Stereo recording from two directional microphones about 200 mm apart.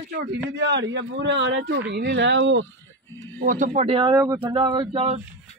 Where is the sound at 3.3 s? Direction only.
40° right (ahead or behind).